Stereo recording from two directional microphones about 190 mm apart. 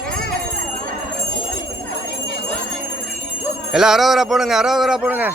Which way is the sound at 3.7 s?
Centre (ahead or behind).